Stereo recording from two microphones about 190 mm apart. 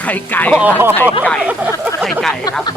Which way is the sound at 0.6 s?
10° right (ahead or behind).